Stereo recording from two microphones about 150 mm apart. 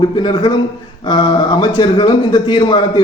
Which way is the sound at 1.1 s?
30° left (ahead or behind).